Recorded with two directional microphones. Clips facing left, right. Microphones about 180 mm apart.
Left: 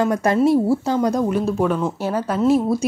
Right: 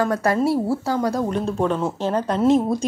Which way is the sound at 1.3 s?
5° left (ahead or behind).